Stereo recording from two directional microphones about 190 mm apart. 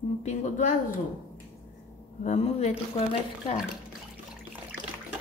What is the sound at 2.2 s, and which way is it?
Speech, 35° left (ahead or behind).